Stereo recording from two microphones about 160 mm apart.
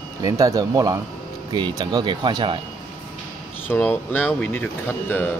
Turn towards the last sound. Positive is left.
turn(degrees=10)  # may be behind; listen again after turning